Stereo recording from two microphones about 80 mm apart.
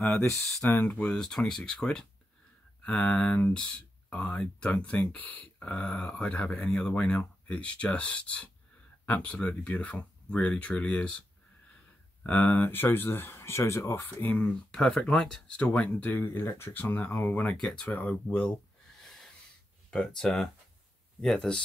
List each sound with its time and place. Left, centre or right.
0.8 s speech: centre
14.4 s speech: centre; by 16.8 s left
16.8 s speech: left
17.6 s speech: centre
17.9 s speech: centre
19.0 s snort: centre
20.2 s speech: centre